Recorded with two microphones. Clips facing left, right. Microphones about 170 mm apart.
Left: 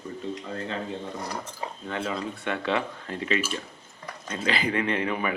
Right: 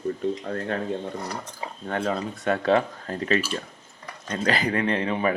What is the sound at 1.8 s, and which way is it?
Speech, 45° right (ahead or behind).